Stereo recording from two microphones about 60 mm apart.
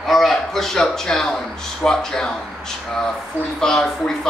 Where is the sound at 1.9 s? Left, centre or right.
Centre.